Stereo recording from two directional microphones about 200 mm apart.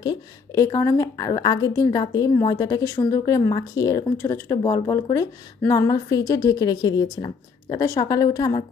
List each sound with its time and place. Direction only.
0.0 s a woman's voice: 20° left (ahead or behind)